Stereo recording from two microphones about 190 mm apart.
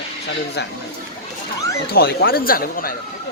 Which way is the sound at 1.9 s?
55° left (ahead or behind).